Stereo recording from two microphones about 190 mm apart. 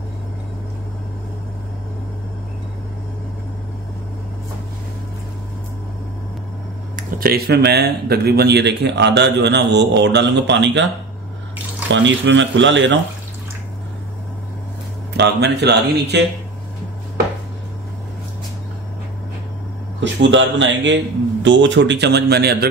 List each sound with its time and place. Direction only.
7.0 s speech: 50° right (ahead or behind); by 10.9 s 70° right (ahead or behind)
11.9 s speech: 70° right (ahead or behind)
15.1 s speech: 65° right (ahead or behind)
20.0 s speech: 75° right (ahead or behind); by 22.7 s 55° right (ahead or behind)